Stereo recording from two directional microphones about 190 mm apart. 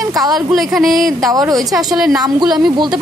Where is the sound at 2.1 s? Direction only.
20° right (ahead or behind).